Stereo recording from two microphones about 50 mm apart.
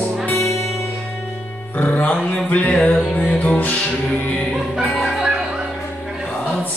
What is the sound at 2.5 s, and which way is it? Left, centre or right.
Music, left.